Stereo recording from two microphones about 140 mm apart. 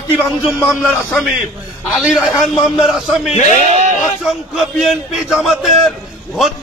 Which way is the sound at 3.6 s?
60° right (ahead or behind).